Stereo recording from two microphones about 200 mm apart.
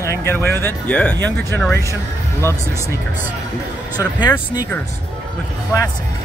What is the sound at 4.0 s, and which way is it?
Speech, 20° left (ahead or behind).